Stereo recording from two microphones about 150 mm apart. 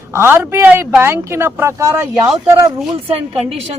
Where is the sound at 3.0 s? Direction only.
40° right (ahead or behind).